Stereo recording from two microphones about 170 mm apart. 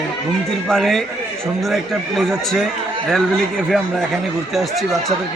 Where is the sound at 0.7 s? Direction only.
Centre (ahead or behind).